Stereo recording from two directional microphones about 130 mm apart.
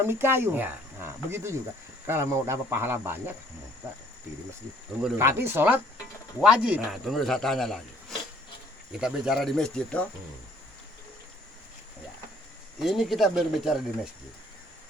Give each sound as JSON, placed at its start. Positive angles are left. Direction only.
{"t": 0.0, "sound": "speech", "side_deg": -15}
{"t": 5.1, "sound": "speech", "side_deg": -20}
{"t": 9.0, "sound": "speech", "side_deg": -5}
{"t": 12.8, "sound": "speech", "side_deg": 0}